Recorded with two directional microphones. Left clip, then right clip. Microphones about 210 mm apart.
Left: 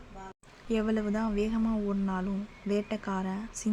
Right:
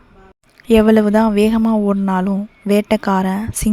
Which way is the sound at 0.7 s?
45° right (ahead or behind).